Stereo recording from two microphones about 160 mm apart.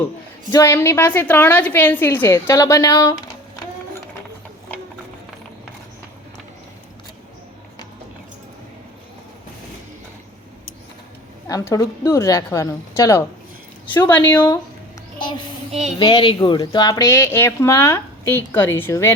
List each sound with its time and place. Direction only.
0.5 s speech: 15° left (ahead or behind)
11.4 s a woman's voice: 20° left (ahead or behind)
14.3 s speech: 10° left (ahead or behind)
15.2 s child singing: 30° left (ahead or behind)
16.0 s speech: 30° left (ahead or behind); by 19.1 s 15° left (ahead or behind)